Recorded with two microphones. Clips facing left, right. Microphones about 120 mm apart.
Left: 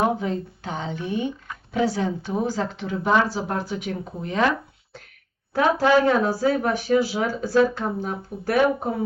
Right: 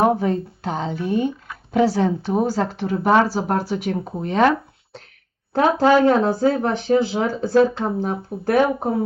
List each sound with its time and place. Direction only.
0.0 s speech: 40° right (ahead or behind)
3.3 s speech: 35° right (ahead or behind)
5.8 s speech: 40° right (ahead or behind)
6.1 s speech: 25° right (ahead or behind)